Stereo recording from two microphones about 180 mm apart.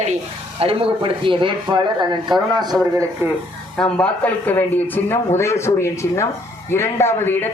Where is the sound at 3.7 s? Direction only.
5° left (ahead or behind).